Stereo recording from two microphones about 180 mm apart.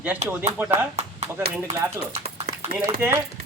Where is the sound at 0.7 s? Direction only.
35° right (ahead or behind).